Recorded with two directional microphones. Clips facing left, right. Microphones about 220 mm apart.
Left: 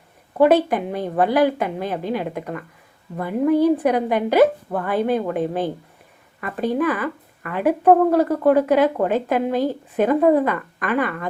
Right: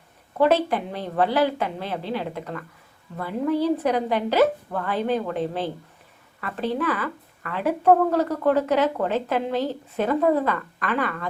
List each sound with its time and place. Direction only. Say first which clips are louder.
0.3 s speech: left 4 dB; 15° left (ahead or behind)